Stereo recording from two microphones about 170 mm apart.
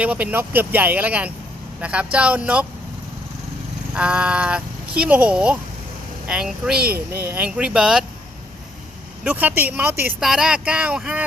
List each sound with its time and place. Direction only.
0.0 s speech: 10° right (ahead or behind)
3.9 s speech: 5° right (ahead or behind)
6.7 s speech: 65° right (ahead or behind)
7.1 s speech: 15° right (ahead or behind)
9.2 s speech: 10° right (ahead or behind)